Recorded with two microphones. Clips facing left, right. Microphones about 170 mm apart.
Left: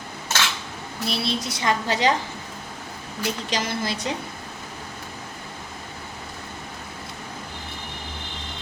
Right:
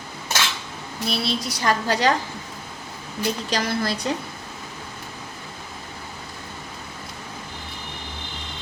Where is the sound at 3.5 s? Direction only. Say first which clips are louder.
Right 3 dB; 20° left (ahead or behind).